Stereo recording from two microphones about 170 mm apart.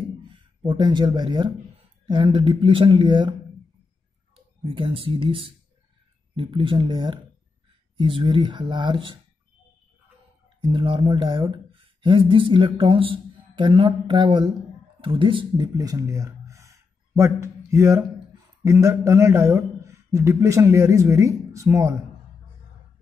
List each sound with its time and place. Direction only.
0.3 s speech: 25° right (ahead or behind)
4.6 s speech: 30° right (ahead or behind)
10.6 s speech: 30° right (ahead or behind)